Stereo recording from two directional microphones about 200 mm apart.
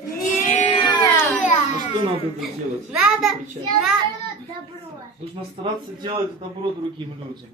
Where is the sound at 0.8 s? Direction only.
20° left (ahead or behind).